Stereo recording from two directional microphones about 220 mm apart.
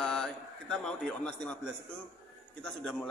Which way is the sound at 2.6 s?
5° left (ahead or behind).